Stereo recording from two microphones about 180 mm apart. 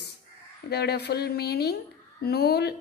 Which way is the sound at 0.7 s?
65° left (ahead or behind).